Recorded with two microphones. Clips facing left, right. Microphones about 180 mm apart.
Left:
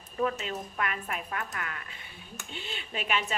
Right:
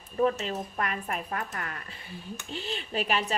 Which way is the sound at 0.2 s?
35° right (ahead or behind).